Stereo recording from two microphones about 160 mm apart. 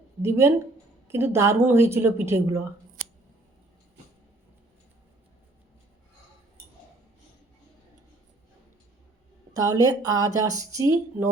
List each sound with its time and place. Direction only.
0.2 s speech: 15° right (ahead or behind)
9.5 s speech: 20° right (ahead or behind)